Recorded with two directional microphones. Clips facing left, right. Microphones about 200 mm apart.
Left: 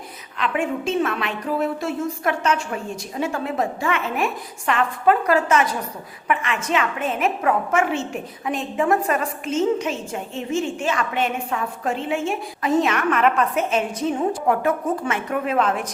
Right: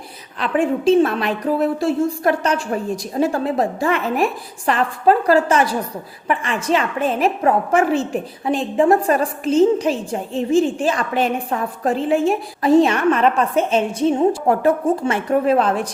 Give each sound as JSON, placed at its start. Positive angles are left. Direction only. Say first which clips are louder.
{"t": 0.3, "sound": "a woman's voice", "louder": "right 5 dB", "side_deg": -35}